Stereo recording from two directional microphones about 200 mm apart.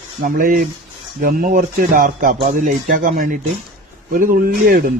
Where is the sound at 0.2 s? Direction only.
45° right (ahead or behind).